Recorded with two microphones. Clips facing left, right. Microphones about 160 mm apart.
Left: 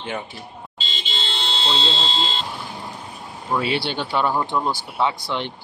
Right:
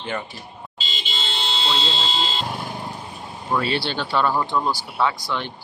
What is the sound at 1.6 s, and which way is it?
Speech, 30° left (ahead or behind).